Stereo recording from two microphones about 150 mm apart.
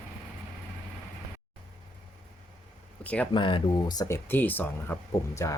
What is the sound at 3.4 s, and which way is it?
Speech, 30° left (ahead or behind).